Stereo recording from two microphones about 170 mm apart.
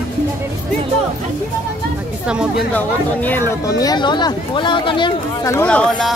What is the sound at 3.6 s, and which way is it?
Speech, 20° left (ahead or behind).